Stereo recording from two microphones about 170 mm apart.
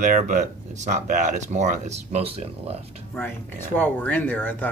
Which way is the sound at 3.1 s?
10° left (ahead or behind).